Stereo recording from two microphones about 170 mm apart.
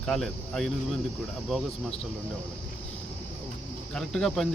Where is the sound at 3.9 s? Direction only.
Centre (ahead or behind).